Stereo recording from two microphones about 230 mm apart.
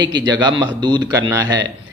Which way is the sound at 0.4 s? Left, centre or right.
Centre.